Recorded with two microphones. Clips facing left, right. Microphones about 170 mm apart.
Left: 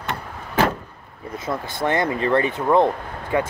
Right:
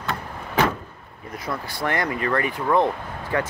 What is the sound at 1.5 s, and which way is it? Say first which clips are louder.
Speech: left 4 dB; 25° left (ahead or behind).